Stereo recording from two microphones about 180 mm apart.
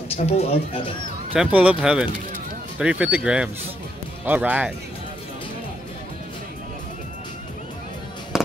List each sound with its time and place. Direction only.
0.1 s speech: 35° left (ahead or behind)
1.3 s speech: 5° right (ahead or behind)